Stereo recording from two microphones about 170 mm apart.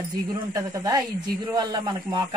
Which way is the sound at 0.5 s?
20° right (ahead or behind).